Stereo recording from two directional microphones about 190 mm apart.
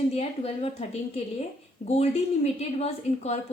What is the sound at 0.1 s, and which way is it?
A woman's voice, 30° left (ahead or behind).